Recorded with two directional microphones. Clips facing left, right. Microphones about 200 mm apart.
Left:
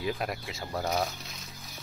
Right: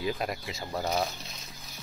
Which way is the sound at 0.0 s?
Centre (ahead or behind).